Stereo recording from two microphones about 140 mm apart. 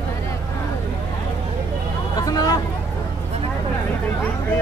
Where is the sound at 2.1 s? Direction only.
25° left (ahead or behind).